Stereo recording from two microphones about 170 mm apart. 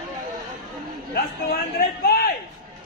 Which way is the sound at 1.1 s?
65° left (ahead or behind).